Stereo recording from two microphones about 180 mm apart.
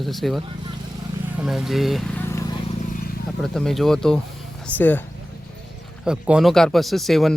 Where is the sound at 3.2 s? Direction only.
Centre (ahead or behind).